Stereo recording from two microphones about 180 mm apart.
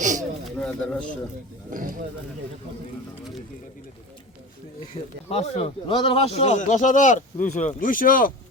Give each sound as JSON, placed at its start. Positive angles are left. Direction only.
{"t": 0.6, "sound": "speech", "side_deg": 5}
{"t": 1.7, "sound": "speech", "side_deg": -45}
{"t": 4.9, "sound": "speech", "side_deg": 35}